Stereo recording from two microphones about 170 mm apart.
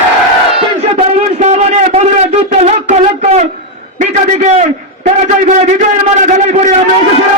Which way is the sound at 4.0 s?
45° right (ahead or behind).